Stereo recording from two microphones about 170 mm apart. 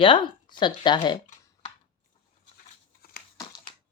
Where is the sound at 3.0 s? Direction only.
65° left (ahead or behind).